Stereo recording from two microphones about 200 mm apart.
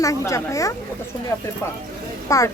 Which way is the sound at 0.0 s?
15° left (ahead or behind).